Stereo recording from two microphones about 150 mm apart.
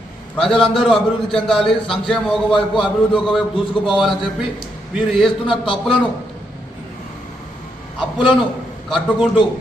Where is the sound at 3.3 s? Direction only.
Centre (ahead or behind).